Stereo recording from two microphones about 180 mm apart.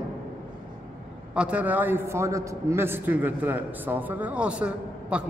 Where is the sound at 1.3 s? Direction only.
5° right (ahead or behind).